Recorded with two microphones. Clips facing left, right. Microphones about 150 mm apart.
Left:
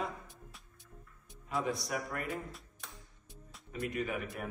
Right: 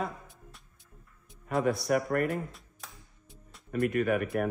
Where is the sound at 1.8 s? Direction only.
55° right (ahead or behind).